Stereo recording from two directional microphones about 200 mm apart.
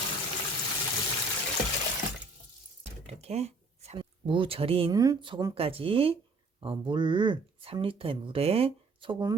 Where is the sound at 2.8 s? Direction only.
30° right (ahead or behind).